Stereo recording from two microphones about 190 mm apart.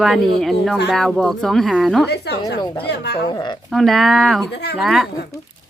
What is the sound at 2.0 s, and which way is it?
Speech, 60° left (ahead or behind).